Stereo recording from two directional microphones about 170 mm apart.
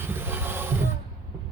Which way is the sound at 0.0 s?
15° right (ahead or behind).